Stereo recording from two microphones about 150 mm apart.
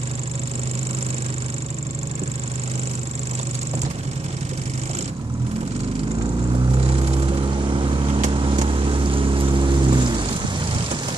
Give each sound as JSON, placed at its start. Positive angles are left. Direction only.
{"t": 6.5, "sound": "vehicle", "side_deg": -40}